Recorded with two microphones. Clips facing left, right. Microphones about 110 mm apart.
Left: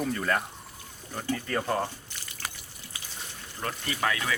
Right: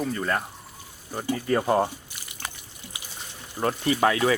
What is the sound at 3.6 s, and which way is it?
Speech, 35° right (ahead or behind).